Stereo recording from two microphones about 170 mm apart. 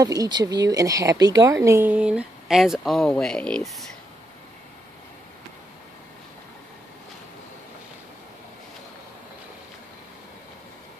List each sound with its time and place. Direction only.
0.0 s speech: 20° right (ahead or behind); by 3.8 s 5° left (ahead or behind)